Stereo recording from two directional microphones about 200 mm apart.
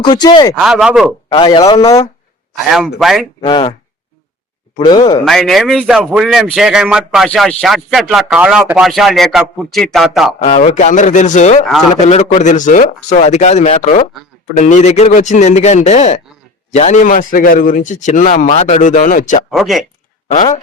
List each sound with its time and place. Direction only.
0.0 s speech: 20° left (ahead or behind)
0.5 s a man's voice: 5° right (ahead or behind)
1.3 s speech: 25° left (ahead or behind)
2.7 s a man's voice: centre (ahead or behind)
3.4 s speech: 25° left (ahead or behind)
4.8 s speech: 20° left (ahead or behind)
5.2 s a man's voice: centre (ahead or behind)
10.4 s a man's voice: 35° left (ahead or behind)
19.5 s a man's voice: centre (ahead or behind)